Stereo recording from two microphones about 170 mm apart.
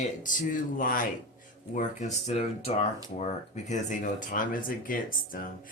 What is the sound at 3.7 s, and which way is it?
Speech, 45° left (ahead or behind).